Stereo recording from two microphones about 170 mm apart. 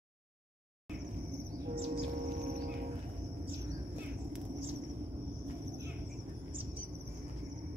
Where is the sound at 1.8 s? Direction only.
35° right (ahead or behind).